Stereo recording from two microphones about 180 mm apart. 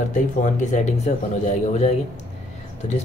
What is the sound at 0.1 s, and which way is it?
Speech, 45° left (ahead or behind).